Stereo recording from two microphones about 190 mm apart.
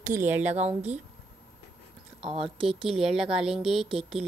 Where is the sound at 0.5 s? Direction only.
35° right (ahead or behind).